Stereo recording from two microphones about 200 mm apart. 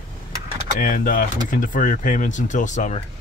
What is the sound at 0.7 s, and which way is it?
Speech, 45° left (ahead or behind).